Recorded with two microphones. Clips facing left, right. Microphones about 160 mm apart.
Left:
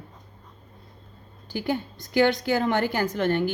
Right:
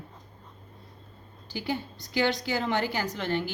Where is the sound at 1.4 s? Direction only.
50° left (ahead or behind).